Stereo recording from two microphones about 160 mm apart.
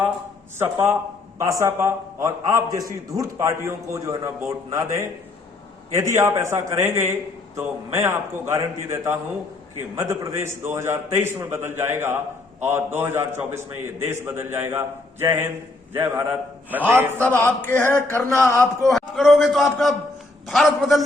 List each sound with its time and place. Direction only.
0.6 s a man's voice: 15° right (ahead or behind)
17.2 s speech: 15° left (ahead or behind)
18.9 s a man's voice: centre (ahead or behind)